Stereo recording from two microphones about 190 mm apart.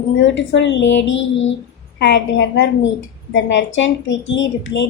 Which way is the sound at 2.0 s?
65° left (ahead or behind).